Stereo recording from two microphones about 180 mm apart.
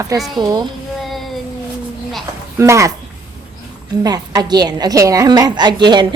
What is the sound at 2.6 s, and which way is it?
Speech, 15° right (ahead or behind).